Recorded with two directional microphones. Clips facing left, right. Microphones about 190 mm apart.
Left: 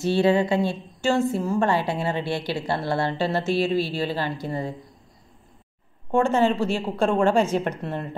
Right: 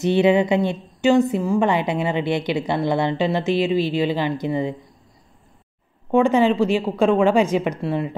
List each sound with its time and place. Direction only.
0.0 s a woman's voice: 20° right (ahead or behind)
6.1 s a woman's voice: 15° right (ahead or behind)